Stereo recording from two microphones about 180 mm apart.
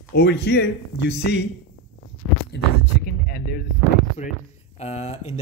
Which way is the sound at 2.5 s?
70° left (ahead or behind).